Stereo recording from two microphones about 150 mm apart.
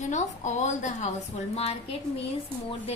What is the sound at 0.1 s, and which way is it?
A woman's voice, 50° left (ahead or behind).